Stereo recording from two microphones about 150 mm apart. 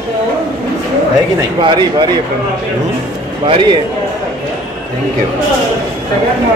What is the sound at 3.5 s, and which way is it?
Speech, 35° right (ahead or behind).